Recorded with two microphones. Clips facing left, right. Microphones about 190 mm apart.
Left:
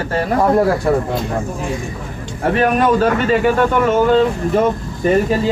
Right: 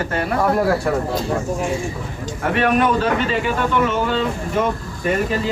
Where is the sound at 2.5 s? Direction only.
40° left (ahead or behind).